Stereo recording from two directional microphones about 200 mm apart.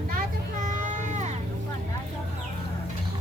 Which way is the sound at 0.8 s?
35° right (ahead or behind).